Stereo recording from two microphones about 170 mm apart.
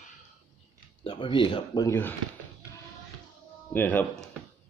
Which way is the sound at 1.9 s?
10° left (ahead or behind).